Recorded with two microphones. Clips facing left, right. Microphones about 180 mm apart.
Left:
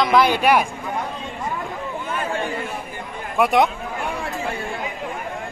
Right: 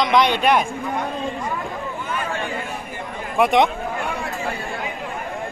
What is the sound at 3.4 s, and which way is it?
Speech, centre (ahead or behind).